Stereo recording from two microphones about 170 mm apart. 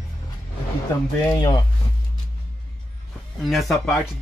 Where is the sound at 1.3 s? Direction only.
25° left (ahead or behind).